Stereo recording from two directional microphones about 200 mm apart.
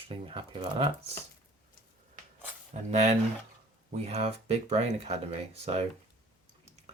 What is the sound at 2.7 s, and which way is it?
Speech, 35° right (ahead or behind).